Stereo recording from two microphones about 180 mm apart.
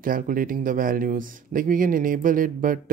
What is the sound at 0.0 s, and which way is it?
Speech, 50° right (ahead or behind).